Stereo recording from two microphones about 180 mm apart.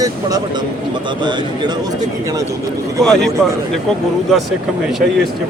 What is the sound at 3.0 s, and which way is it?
Speech, 5° left (ahead or behind).